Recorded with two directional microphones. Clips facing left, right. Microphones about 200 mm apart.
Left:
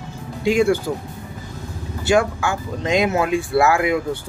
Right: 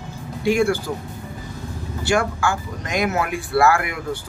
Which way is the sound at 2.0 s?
20° left (ahead or behind).